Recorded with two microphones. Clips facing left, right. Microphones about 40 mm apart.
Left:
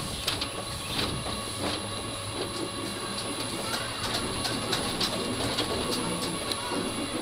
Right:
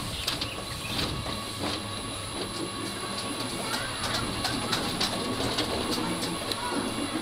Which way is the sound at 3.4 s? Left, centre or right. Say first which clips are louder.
Right 1 dB; centre.